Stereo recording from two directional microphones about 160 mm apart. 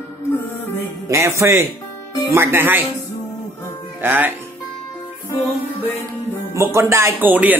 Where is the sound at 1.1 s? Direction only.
20° right (ahead or behind).